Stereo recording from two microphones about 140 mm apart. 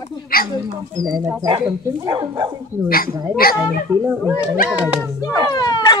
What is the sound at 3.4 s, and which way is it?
Speech, 90° left.